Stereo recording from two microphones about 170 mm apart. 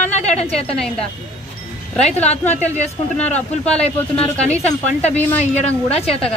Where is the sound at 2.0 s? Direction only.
40° left (ahead or behind).